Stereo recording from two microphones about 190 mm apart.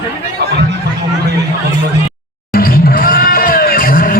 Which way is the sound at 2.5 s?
50° left (ahead or behind).